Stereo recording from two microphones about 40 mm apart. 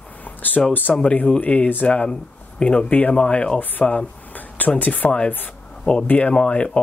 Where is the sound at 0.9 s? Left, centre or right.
Centre.